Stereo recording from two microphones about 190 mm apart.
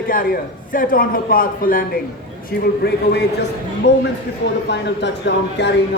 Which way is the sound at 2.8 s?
60° left (ahead or behind).